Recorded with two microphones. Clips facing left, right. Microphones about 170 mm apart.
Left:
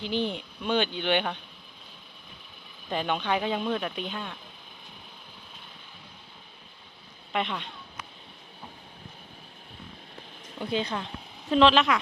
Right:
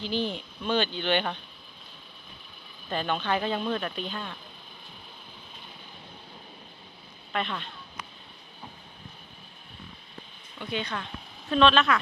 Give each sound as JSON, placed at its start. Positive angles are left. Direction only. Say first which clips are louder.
{"t": 0.0, "sound": "speech", "louder": "left 1 dB", "side_deg": 15}
{"t": 2.9, "sound": "speech", "louder": "left 1 dB", "side_deg": 15}
{"t": 7.3, "sound": "speech", "louder": "left 1 dB", "side_deg": 15}
{"t": 10.6, "sound": "speech", "louder": "left 4 dB", "side_deg": 30}
{"t": 11.4, "sound": "speech", "louder": "left 1 dB", "side_deg": 20}